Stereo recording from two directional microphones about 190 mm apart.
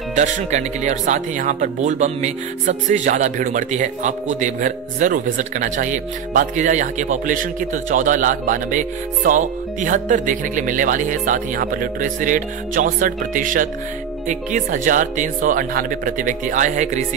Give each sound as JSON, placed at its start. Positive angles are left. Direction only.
{"t": 0.1, "sound": "speech", "side_deg": -40}